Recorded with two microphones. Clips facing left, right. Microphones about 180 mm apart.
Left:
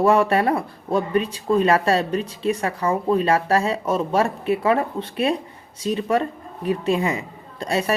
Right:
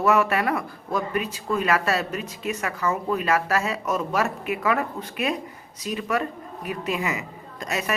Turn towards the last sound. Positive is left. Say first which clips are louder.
# left 6 dB
turn(degrees=30)  # may be behind; listen again after turning